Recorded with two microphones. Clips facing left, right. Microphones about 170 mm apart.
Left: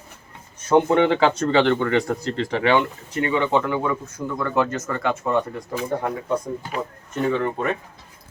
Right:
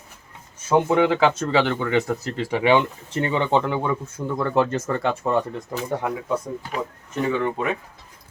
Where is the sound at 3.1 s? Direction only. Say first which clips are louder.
Even; 30° right (ahead or behind).